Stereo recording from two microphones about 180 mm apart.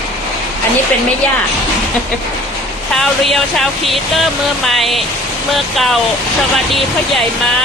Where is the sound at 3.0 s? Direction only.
Centre (ahead or behind).